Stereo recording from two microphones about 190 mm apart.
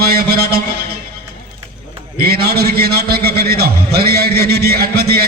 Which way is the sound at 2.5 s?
55° right (ahead or behind).